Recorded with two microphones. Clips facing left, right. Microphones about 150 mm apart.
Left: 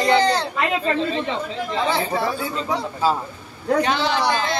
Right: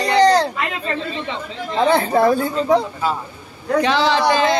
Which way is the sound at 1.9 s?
45° right (ahead or behind).